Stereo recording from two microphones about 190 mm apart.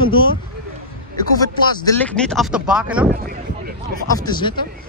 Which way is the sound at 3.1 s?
50° right (ahead or behind).